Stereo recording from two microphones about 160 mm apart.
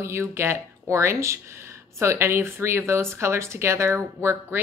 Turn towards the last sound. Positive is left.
turn(degrees=-15)  # may be behind; listen again after turning